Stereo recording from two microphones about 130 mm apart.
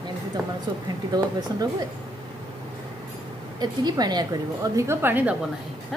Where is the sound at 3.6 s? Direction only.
30° right (ahead or behind); by 5.3 s 15° right (ahead or behind).